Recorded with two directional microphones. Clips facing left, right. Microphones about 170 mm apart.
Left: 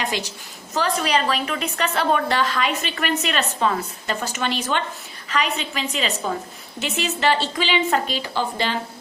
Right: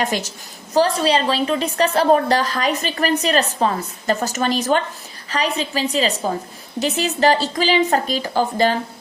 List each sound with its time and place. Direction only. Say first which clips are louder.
0.0 s a woman's voice: right 4 dB; 45° right (ahead or behind)